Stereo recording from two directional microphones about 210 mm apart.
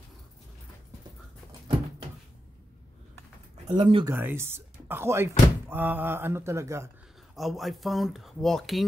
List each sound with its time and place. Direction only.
3.7 s speech: 20° right (ahead or behind)
4.1 s speech: 10° right (ahead or behind)
7.3 s speech: centre (ahead or behind)